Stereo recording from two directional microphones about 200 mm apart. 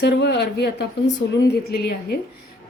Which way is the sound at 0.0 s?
55° left (ahead or behind).